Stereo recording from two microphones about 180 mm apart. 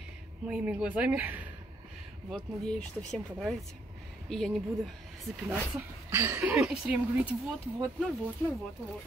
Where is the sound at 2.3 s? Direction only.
Centre (ahead or behind).